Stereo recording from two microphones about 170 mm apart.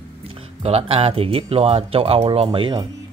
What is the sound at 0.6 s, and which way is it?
Speech, 35° right (ahead or behind).